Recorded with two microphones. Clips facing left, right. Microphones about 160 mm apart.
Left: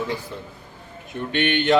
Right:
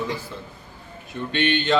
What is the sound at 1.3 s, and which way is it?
Speech, 15° left (ahead or behind).